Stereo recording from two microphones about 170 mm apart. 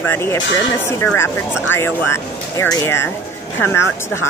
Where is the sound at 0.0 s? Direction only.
15° left (ahead or behind).